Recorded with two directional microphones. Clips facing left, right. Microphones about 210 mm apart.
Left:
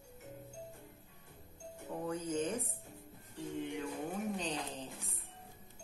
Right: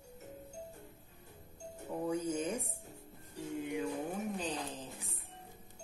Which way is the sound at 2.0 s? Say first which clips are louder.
Right 1 dB; 10° right (ahead or behind).